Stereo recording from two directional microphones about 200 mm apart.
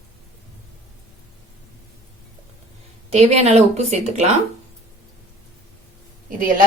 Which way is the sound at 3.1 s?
35° right (ahead or behind).